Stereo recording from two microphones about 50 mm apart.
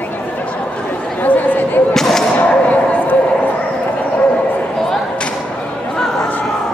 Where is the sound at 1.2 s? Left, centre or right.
Left.